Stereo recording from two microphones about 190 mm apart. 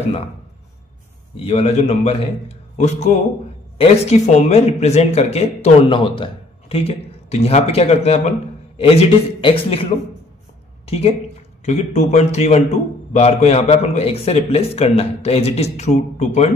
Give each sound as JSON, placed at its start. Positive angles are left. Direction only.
{"t": 1.3, "sound": "a man's voice", "side_deg": 30}